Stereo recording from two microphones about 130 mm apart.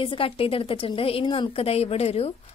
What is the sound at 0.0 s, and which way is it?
Speech, 45° left (ahead or behind).